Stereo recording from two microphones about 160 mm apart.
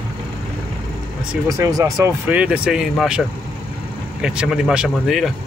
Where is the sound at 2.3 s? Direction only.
5° right (ahead or behind).